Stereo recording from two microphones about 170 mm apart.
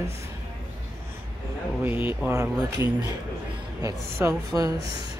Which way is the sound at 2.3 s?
20° right (ahead or behind).